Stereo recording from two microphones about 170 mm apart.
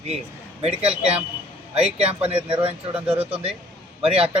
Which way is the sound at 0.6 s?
40° right (ahead or behind).